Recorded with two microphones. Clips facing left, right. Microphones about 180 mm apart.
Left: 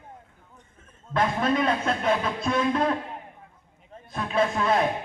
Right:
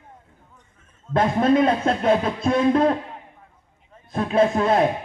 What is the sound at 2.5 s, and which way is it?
Speech, 30° right (ahead or behind).